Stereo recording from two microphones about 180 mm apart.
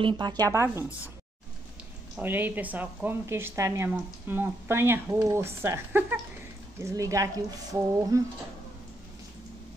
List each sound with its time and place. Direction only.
0.0 s a woman's voice: 25° right (ahead or behind)
2.1 s a woman's voice: 10° right (ahead or behind)